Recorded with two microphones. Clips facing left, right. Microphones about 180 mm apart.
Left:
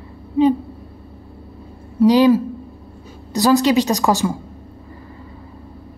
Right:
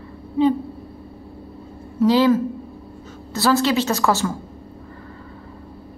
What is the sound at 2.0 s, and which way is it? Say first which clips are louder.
A woman's voice: left 3 dB; 15° left (ahead or behind).